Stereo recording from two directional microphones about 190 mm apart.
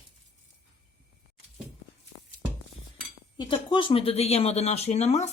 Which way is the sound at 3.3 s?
25° left (ahead or behind).